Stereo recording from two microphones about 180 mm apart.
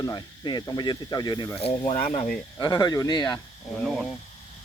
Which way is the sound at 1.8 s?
40° left (ahead or behind).